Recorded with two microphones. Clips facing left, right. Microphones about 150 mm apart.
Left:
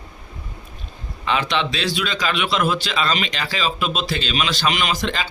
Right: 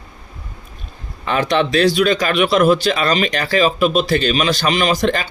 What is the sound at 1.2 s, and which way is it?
Speech, 50° right (ahead or behind).